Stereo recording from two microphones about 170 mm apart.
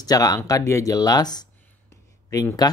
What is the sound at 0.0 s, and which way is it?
Speech, 20° left (ahead or behind).